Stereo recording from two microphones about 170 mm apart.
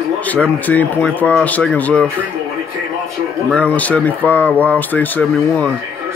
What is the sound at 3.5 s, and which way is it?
Speech, 10° left (ahead or behind).